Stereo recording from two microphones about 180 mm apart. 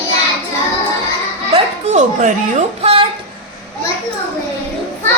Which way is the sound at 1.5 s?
40° right (ahead or behind).